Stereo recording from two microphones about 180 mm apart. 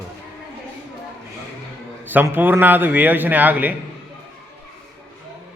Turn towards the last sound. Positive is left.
turn(degrees=-10)  # may be behind; listen again after turning